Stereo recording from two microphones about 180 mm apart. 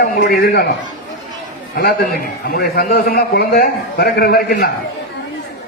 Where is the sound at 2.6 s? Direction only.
55° left (ahead or behind).